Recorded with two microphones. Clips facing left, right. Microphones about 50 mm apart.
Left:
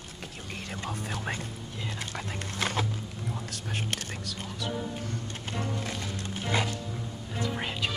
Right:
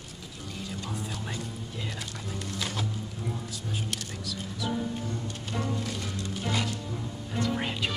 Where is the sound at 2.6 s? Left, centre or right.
Left.